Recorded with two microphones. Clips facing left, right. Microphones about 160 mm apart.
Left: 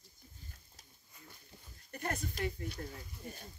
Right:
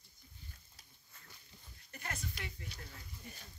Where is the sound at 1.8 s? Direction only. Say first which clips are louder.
Left 7 dB; 45° left (ahead or behind).